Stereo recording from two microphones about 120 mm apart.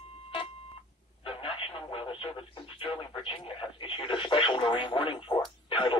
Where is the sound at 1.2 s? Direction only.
50° left (ahead or behind).